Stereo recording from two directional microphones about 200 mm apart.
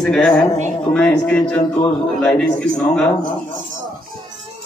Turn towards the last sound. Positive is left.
turn(degrees=5)  # may be behind; listen again after turning